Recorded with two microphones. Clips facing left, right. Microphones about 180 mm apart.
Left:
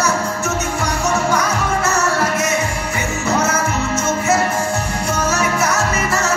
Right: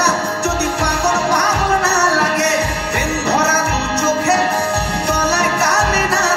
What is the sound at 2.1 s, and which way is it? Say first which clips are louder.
Music: right 2 dB; 70° right (ahead or behind).